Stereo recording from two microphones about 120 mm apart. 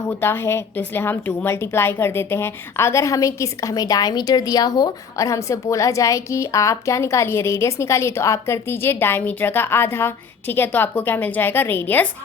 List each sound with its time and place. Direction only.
0.1 s a woman's voice: 20° left (ahead or behind)